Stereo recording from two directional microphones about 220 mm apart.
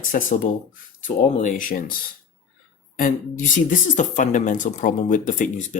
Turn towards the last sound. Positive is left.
turn(degrees=35)  # may be behind; listen again after turning